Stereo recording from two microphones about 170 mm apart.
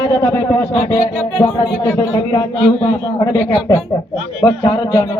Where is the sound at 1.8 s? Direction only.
15° left (ahead or behind).